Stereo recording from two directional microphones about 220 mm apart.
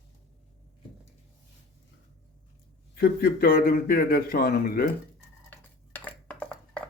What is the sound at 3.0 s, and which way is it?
Speech, 45° left (ahead or behind).